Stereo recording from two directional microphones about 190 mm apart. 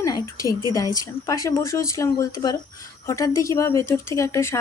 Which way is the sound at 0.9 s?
20° left (ahead or behind).